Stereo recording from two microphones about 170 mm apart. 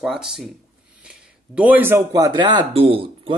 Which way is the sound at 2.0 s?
20° right (ahead or behind).